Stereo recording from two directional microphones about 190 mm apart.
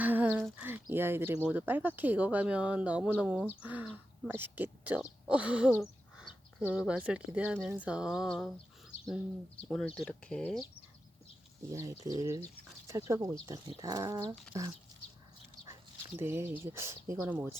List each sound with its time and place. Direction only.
0.0 s speech: 10° right (ahead or behind)
6.1 s a sound: 5° right (ahead or behind)
7.3 s speech: 5° right (ahead or behind)
9.6 s speech: 5° left (ahead or behind)
11.7 s speech: 15° right (ahead or behind)
16.1 s speech: 10° right (ahead or behind)